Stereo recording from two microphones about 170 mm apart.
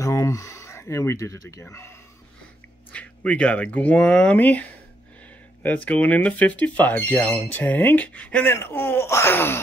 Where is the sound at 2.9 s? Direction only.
5° left (ahead or behind).